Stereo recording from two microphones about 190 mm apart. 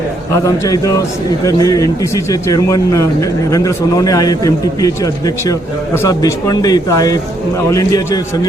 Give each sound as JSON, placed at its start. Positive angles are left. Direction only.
{"t": 0.4, "sound": "a man's voice", "side_deg": 15}